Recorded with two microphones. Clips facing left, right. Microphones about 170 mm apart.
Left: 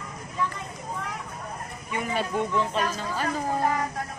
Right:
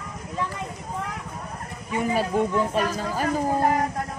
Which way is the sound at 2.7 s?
45° right (ahead or behind).